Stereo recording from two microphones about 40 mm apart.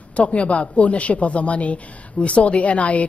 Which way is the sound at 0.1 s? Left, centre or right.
Left.